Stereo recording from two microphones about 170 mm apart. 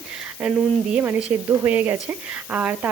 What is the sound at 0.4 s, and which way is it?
A woman's voice, 5° right (ahead or behind).